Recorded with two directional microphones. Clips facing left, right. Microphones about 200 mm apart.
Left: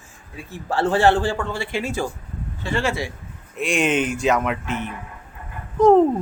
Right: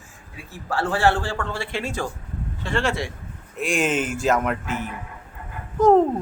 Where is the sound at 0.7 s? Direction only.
20° left (ahead or behind).